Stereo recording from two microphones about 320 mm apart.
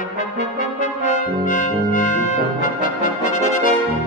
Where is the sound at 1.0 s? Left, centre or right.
Left.